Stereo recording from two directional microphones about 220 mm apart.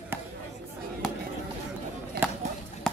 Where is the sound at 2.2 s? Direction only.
45° right (ahead or behind).